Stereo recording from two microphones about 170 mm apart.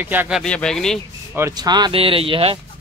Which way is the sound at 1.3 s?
20° right (ahead or behind).